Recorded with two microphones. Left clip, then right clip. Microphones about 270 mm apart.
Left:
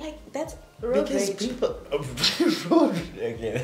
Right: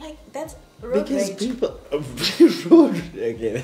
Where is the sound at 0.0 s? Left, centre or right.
Centre.